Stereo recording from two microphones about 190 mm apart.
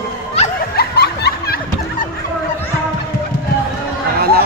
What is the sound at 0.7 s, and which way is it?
Snicker, 55° left (ahead or behind).